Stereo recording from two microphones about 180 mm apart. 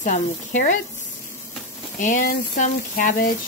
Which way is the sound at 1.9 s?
45° left (ahead or behind).